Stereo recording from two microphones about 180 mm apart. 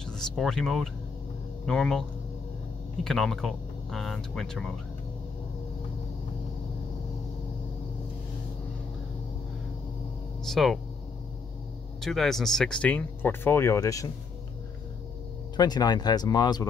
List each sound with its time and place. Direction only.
0.0 s speech: 5° left (ahead or behind)
10.4 s speech: centre (ahead or behind)
12.0 s speech: centre (ahead or behind); by 14.1 s 20° left (ahead or behind)
15.5 s speech: 20° left (ahead or behind)